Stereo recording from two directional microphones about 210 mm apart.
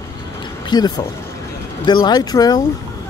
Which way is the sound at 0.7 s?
20° left (ahead or behind).